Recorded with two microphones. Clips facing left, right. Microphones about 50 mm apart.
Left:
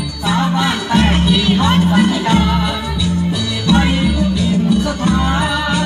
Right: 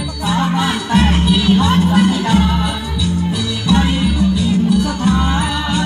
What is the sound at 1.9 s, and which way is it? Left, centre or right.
Music, left.